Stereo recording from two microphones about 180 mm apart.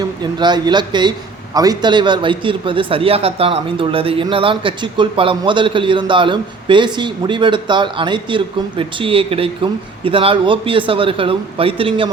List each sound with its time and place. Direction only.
0.0 s a man's voice: 25° right (ahead or behind)